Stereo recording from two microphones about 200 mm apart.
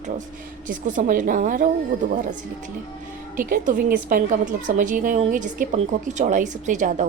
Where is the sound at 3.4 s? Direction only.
40° right (ahead or behind).